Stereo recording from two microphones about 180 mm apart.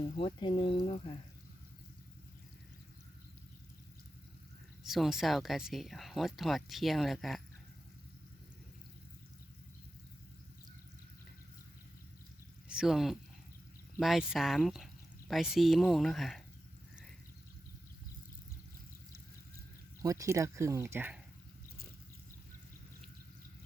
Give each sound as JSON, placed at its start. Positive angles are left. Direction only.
{"t": 0.2, "sound": "speech", "side_deg": 25}
{"t": 4.8, "sound": "speech", "side_deg": 0}
{"t": 12.6, "sound": "speech", "side_deg": -5}
{"t": 20.0, "sound": "speech", "side_deg": -15}